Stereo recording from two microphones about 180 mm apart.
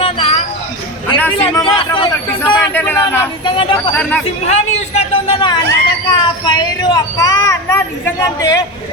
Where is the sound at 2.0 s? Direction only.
15° left (ahead or behind).